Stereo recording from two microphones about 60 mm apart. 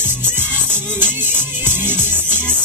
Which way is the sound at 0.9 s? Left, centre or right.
Right.